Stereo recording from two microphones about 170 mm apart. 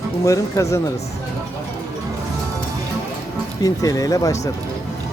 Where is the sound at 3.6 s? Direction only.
20° left (ahead or behind).